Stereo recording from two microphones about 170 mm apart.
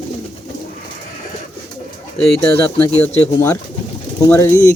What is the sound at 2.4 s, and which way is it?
Speech, 15° left (ahead or behind).